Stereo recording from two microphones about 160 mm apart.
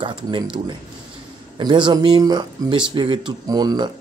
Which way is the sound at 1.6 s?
30° right (ahead or behind).